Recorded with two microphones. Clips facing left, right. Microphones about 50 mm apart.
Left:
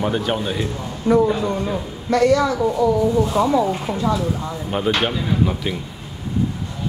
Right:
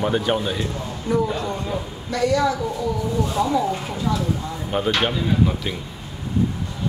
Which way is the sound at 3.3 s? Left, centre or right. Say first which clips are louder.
Left 3 dB; left.